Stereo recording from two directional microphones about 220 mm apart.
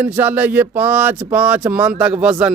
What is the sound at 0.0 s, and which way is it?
Speech, 10° right (ahead or behind).